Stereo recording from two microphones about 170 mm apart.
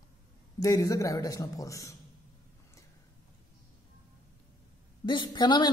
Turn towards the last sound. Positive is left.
turn(degrees=25)  # may be behind; listen again after turning